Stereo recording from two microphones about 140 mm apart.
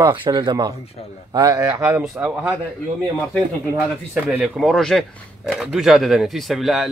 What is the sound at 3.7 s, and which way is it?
Speech, 10° right (ahead or behind).